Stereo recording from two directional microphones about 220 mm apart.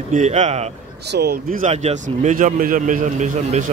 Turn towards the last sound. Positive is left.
turn(degrees=-30)  # may be behind; listen again after turning